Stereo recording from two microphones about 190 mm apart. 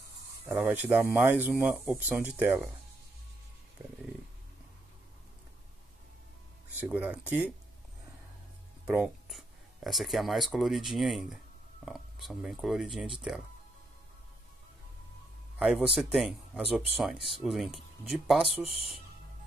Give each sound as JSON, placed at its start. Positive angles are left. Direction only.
{"t": 0.5, "sound": "speech", "side_deg": -10}
{"t": 6.8, "sound": "speech", "side_deg": -10}
{"t": 8.8, "sound": "speech", "side_deg": -5}
{"t": 15.6, "sound": "speech", "side_deg": -5}